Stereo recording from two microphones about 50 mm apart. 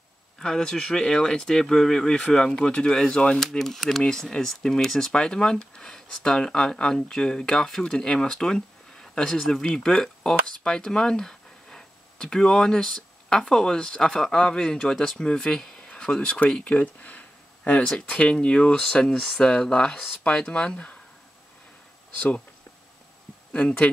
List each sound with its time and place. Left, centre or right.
0.4 s speech: centre
3.4 s speech: centre; by 17.2 s left
17.8 s speech: centre
23.5 s speech: left